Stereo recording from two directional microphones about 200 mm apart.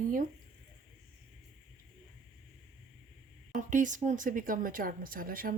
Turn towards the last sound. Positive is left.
turn(degrees=-45)  # may be behind; listen again after turning